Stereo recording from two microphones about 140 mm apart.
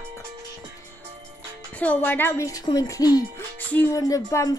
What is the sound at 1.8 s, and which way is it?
Speech, 10° left (ahead or behind).